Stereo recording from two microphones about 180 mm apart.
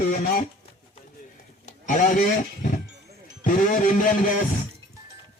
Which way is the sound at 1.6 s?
45° left (ahead or behind).